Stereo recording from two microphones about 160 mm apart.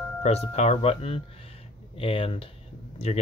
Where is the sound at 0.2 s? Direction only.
45° left (ahead or behind).